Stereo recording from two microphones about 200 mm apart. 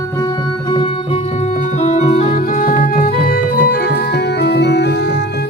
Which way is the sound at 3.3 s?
55° left (ahead or behind).